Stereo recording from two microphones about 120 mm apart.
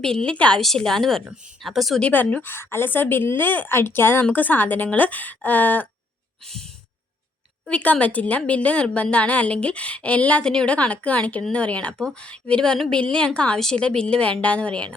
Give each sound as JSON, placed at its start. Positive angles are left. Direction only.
{"t": 0.3, "sound": "a woman's voice", "side_deg": 10}
{"t": 2.0, "sound": "speech", "side_deg": 15}
{"t": 7.7, "sound": "speech", "side_deg": 10}